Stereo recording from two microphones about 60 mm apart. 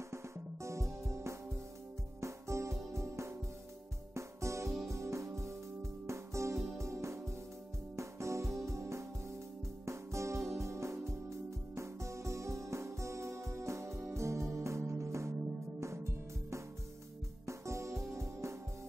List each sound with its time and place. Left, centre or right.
0.1 s music: right